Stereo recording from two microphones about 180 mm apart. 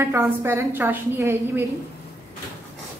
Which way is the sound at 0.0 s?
15° right (ahead or behind).